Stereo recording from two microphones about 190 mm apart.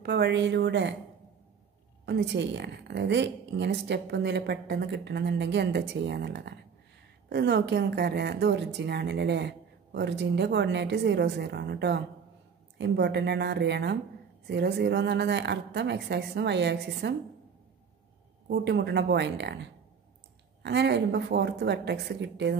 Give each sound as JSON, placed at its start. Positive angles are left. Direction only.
{"t": 0.0, "sound": "a woman's voice", "side_deg": -60}
{"t": 2.0, "sound": "a woman's voice", "side_deg": -65}
{"t": 18.5, "sound": "a woman's voice", "side_deg": -65}